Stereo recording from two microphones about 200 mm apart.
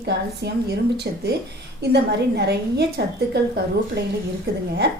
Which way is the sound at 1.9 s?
55° right (ahead or behind).